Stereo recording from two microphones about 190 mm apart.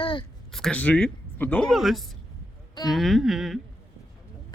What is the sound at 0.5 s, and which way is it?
Speech, 5° left (ahead or behind).